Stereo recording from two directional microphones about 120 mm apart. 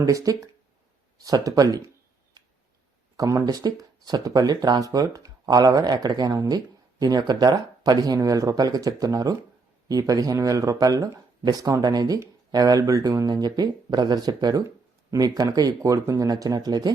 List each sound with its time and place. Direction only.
0.0 s speech: 30° right (ahead or behind)
3.2 s speech: 30° right (ahead or behind)